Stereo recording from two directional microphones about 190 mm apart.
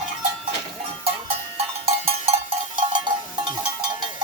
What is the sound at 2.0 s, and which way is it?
Cowbell, 30° right (ahead or behind).